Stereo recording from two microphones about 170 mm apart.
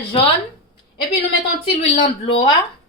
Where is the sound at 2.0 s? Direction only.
30° left (ahead or behind).